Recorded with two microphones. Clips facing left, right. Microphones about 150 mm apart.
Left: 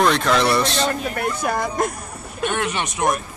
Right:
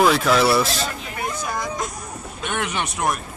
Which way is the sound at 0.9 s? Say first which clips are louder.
Left 5 dB; 55° left (ahead or behind).